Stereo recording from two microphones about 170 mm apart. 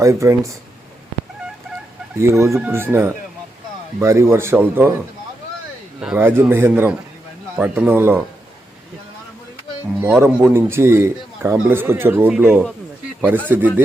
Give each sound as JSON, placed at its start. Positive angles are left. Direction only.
{"t": 0.0, "sound": "a man's voice", "side_deg": -15}
{"t": 2.1, "sound": "a man's voice", "side_deg": -15}
{"t": 6.0, "sound": "a man's voice", "side_deg": -5}
{"t": 10.0, "sound": "a man's voice", "side_deg": -10}